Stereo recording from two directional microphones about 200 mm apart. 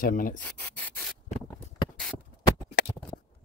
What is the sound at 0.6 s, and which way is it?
Rub, 5° left (ahead or behind).